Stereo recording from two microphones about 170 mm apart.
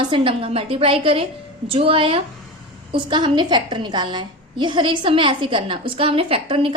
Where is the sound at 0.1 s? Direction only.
30° right (ahead or behind).